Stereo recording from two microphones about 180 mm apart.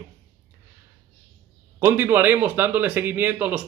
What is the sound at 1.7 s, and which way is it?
A man's voice, 10° right (ahead or behind).